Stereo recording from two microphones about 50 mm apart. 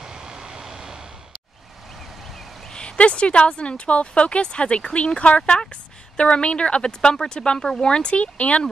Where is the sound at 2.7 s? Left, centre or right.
Left.